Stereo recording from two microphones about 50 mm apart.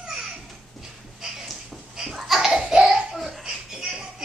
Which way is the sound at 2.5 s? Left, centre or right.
Centre.